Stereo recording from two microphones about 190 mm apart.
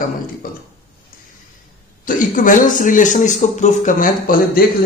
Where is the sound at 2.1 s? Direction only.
45° left (ahead or behind).